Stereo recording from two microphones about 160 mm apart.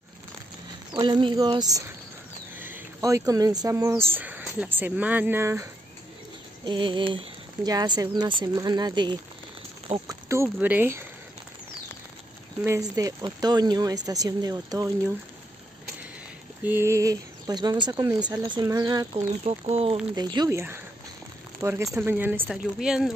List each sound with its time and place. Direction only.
0.9 s speech: 30° right (ahead or behind)
6.6 s speech: 30° right (ahead or behind)
10.2 s speech: 15° right (ahead or behind)
12.6 s speech: 20° right (ahead or behind)
16.6 s speech: 15° right (ahead or behind)
19.7 s speech: 40° right (ahead or behind)
20.2 s speech: 25° right (ahead or behind); by 23.1 s 5° right (ahead or behind)